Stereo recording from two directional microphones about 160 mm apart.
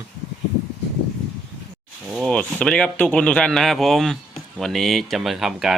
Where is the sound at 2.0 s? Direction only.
Centre (ahead or behind).